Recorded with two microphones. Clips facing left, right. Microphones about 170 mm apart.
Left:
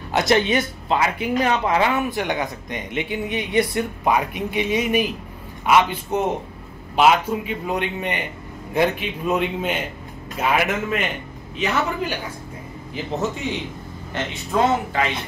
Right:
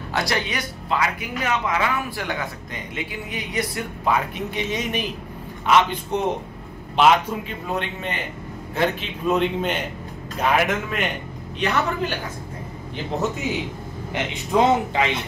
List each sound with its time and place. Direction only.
0.1 s speech: 20° left (ahead or behind)
4.1 s a man's voice: 10° left (ahead or behind)
12.9 s a man's voice: centre (ahead or behind)
14.1 s speech: 15° right (ahead or behind)